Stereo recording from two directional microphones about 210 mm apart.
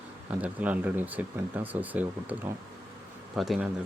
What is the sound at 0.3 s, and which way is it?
Speech, 5° right (ahead or behind).